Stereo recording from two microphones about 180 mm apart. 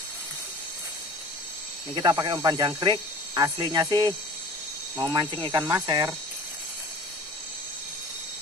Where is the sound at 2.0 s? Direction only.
25° right (ahead or behind).